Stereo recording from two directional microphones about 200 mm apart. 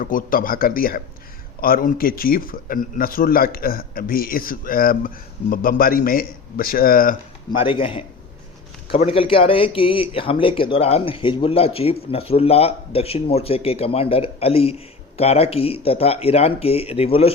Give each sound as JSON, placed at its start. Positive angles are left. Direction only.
{"t": 0.0, "sound": "speech", "side_deg": 45}
{"t": 7.5, "sound": "speech", "side_deg": 25}